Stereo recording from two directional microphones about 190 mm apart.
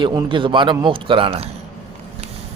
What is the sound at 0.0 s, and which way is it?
A man's voice, 25° right (ahead or behind).